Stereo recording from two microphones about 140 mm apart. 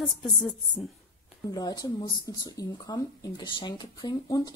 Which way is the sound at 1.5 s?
25° left (ahead or behind).